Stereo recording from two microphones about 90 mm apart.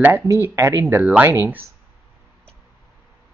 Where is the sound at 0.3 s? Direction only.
30° right (ahead or behind).